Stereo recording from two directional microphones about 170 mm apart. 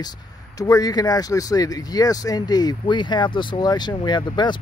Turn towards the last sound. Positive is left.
turn(degrees=25)  # may be behind; listen again after turning